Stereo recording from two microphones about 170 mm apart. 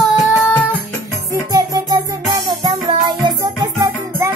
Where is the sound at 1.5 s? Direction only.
25° right (ahead or behind).